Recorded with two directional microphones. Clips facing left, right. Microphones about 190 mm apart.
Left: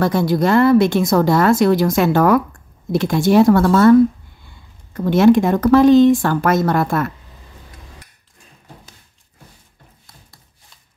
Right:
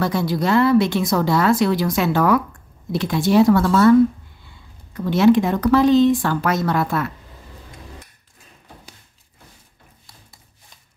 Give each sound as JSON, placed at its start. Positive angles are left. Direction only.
{"t": 0.0, "sound": "a woman's voice", "side_deg": 50}
{"t": 4.9, "sound": "a woman's voice", "side_deg": 50}